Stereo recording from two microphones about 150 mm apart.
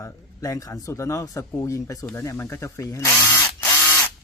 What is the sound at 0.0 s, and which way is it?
Speech, 20° left (ahead or behind).